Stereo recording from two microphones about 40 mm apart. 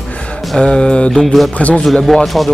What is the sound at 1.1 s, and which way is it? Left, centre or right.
Music, centre.